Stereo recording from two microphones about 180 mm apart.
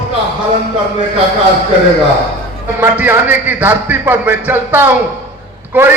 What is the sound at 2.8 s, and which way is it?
A man's voice, 10° right (ahead or behind).